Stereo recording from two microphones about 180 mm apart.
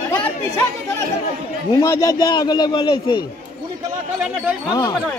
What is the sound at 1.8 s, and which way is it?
Speech, 15° left (ahead or behind).